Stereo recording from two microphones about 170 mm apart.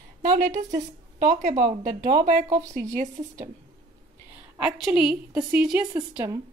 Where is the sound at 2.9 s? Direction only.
45° right (ahead or behind).